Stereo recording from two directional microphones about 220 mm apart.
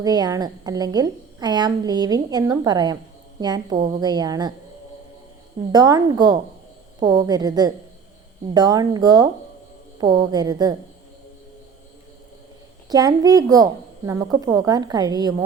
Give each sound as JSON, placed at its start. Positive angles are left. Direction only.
{"t": 0.0, "sound": "a woman's voice", "side_deg": -15}
{"t": 5.7, "sound": "a woman's voice", "side_deg": -15}
{"t": 12.9, "sound": "a woman's voice", "side_deg": -15}